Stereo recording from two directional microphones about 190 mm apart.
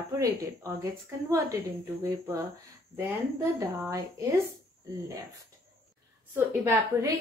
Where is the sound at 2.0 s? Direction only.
15° right (ahead or behind).